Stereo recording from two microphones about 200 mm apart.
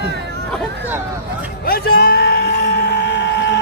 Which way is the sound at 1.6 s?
50° left (ahead or behind).